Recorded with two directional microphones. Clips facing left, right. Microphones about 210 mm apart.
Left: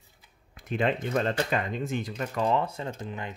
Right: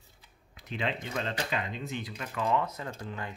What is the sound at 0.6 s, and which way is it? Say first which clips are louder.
Speech: left 7 dB; 50° left (ahead or behind).